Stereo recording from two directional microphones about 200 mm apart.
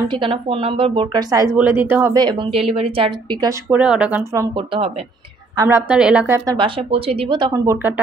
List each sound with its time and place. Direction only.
0.1 s speech: 25° right (ahead or behind)
1.6 s a woman's voice: 10° right (ahead or behind)
2.2 s speech: 25° right (ahead or behind)
3.7 s a woman's voice: 5° right (ahead or behind)